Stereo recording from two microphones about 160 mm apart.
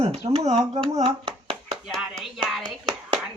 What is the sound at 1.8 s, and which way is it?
Music, centre (ahead or behind).